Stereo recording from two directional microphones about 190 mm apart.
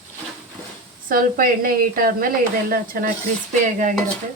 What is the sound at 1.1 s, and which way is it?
Speech, 50° right (ahead or behind).